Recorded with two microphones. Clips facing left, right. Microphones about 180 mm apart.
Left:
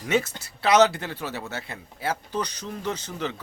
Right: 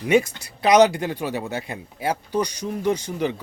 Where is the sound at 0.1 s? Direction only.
15° right (ahead or behind).